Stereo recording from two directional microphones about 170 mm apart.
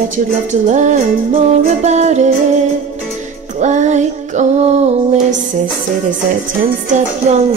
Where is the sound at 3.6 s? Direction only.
45° right (ahead or behind).